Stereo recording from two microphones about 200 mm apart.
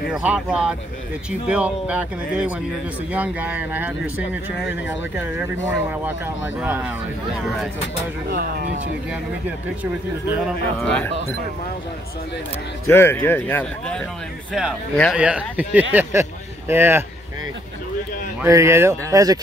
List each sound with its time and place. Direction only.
0.1 s speech: 5° right (ahead or behind)
8.3 s speech: 50° right (ahead or behind)
10.8 s speech: 5° left (ahead or behind)
12.8 s speech: 10° left (ahead or behind); by 17.0 s 10° right (ahead or behind)
18.4 s speech: 15° right (ahead or behind)